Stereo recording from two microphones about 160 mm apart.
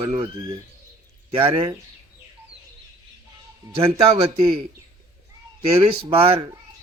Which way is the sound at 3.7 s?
35° right (ahead or behind).